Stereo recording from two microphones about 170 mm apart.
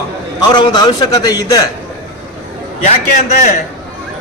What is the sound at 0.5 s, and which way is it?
A man's voice, 25° left (ahead or behind).